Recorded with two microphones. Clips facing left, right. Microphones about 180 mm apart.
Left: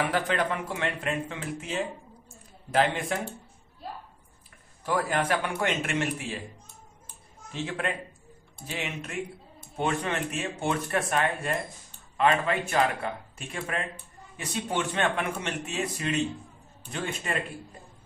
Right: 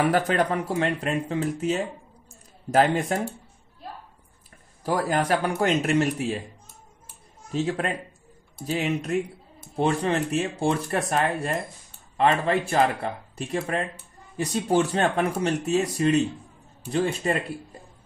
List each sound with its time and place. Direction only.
0.1 s speech: 40° right (ahead or behind)
4.8 s speech: 35° right (ahead or behind)
7.5 s speech: 35° right (ahead or behind)